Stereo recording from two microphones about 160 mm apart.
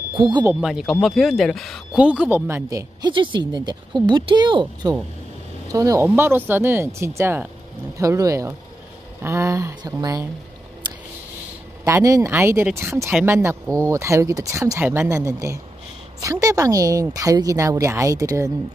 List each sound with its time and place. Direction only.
0.1 s a woman's voice: 30° right (ahead or behind)
0.6 s a woman's voice: 5° right (ahead or behind); by 10.2 s 20° right (ahead or behind)
11.8 s a woman's voice: 20° right (ahead or behind)